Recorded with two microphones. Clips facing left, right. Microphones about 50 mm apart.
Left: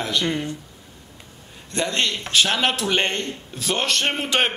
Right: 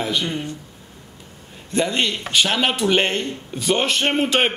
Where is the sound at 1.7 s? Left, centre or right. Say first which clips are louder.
Right 3 dB; centre.